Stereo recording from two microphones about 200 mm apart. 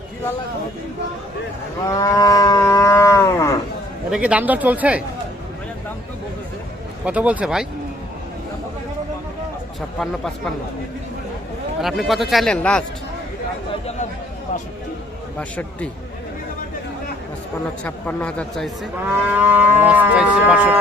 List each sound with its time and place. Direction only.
1.9 s livestock: 15° left (ahead or behind)
4.1 s speech: 5° right (ahead or behind)
7.0 s speech: 5° right (ahead or behind)
10.0 s speech: centre (ahead or behind)
11.8 s speech: centre (ahead or behind)
15.4 s livestock: 5° left (ahead or behind)
17.8 s livestock: 5° left (ahead or behind)
19.3 s speech: 10° right (ahead or behind)